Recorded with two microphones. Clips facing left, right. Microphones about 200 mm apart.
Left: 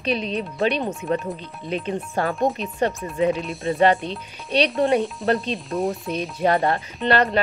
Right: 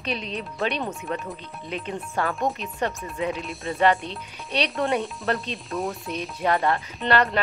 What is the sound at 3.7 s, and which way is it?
Speech, 30° left (ahead or behind).